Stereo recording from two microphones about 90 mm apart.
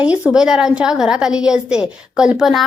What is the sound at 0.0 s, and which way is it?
A woman's voice, 15° right (ahead or behind).